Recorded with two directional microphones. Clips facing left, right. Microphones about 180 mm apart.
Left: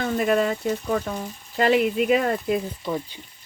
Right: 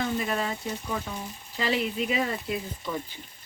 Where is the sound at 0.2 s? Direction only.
60° left (ahead or behind).